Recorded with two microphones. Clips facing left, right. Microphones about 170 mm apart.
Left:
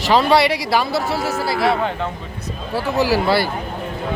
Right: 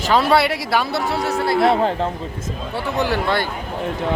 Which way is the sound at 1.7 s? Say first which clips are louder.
Right 2 dB; 35° right (ahead or behind).